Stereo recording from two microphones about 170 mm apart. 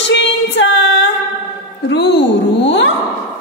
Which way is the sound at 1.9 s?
90° left.